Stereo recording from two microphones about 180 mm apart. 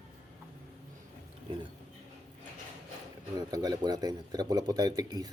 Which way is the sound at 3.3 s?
20° right (ahead or behind).